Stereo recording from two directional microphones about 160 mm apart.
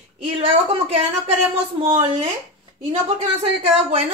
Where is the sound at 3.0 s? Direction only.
40° right (ahead or behind).